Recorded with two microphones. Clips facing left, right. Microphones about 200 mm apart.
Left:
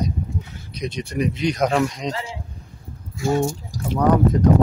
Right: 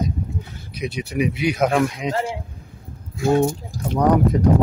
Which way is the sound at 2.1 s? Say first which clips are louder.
Right 6 dB; 50° right (ahead or behind).